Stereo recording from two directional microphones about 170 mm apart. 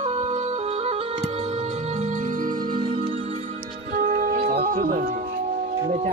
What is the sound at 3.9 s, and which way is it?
Music, 50° right (ahead or behind).